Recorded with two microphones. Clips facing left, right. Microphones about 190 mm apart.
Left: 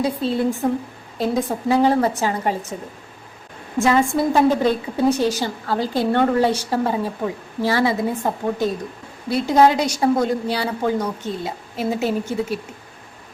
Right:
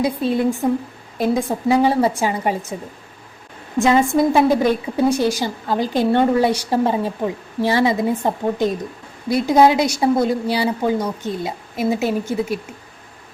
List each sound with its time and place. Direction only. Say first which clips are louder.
0.0 s a woman's voice: right 2 dB; 15° right (ahead or behind)
3.8 s a woman's voice: right 2 dB; 20° right (ahead or behind)